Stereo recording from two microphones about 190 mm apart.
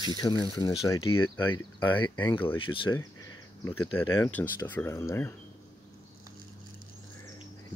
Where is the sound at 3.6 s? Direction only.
10° left (ahead or behind).